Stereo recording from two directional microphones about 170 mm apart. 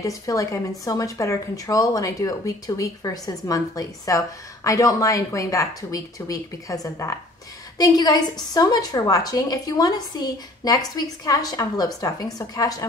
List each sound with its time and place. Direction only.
0.0 s a woman's voice: 20° left (ahead or behind)